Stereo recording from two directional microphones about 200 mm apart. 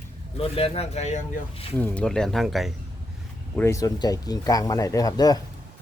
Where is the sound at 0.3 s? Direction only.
30° left (ahead or behind).